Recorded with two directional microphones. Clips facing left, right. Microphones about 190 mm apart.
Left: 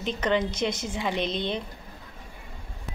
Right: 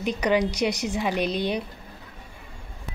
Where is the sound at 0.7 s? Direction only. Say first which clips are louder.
Right 4 dB; 75° right (ahead or behind).